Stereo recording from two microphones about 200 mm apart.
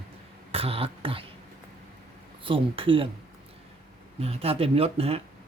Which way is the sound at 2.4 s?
25° right (ahead or behind).